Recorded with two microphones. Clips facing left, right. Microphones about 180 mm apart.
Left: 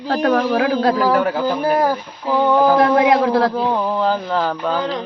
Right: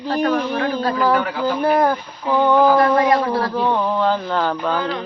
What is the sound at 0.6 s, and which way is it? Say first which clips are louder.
Speech: left 4 dB; 85° left.